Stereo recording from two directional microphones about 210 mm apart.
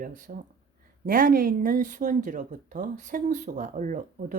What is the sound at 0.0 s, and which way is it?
Speech, 40° right (ahead or behind).